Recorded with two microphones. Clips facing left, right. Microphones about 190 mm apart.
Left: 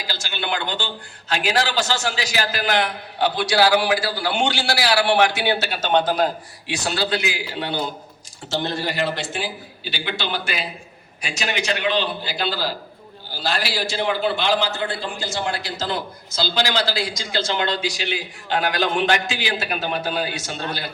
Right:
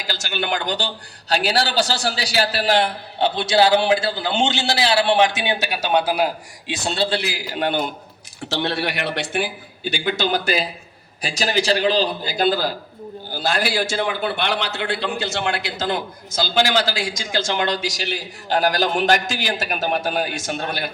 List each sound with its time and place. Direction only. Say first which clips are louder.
0.1 s a man's voice: right 3 dB; 45° right (ahead or behind); by 6.7 s 10° right (ahead or behind)
6.8 s a man's voice: right 1 dB; 25° right (ahead or behind); by 7.8 s 45° right (ahead or behind)
8.4 s a man's voice: right 1 dB; 65° right (ahead or behind)